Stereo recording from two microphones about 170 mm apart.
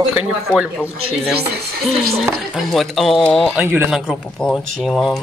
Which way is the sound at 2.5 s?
Centre (ahead or behind).